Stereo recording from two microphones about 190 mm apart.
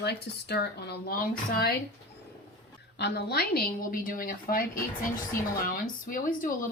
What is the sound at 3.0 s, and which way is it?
Speech, 60° left (ahead or behind).